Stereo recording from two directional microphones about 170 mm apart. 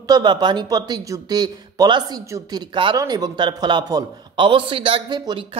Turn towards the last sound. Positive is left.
turn(degrees=-25)  # may be behind; listen again after turning